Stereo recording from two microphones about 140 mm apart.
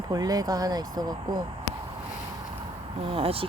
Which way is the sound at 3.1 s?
45° right (ahead or behind).